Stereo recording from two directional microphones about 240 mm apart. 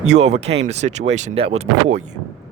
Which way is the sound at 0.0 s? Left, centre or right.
Right.